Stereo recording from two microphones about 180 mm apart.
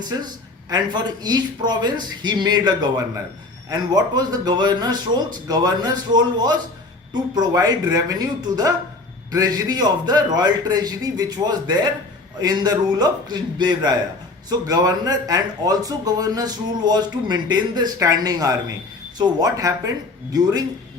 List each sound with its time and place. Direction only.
0.7 s speech: 20° right (ahead or behind)